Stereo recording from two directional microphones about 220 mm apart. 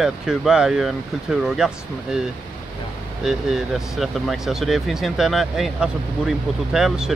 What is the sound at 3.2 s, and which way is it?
Speech, centre (ahead or behind).